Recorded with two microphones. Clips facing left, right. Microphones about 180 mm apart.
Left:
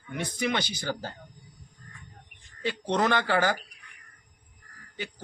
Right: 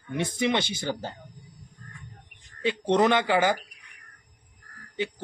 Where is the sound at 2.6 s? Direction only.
20° right (ahead or behind).